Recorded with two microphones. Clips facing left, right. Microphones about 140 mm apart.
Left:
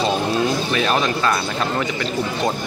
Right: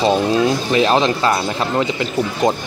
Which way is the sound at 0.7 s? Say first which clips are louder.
Right 5 dB; 25° right (ahead or behind).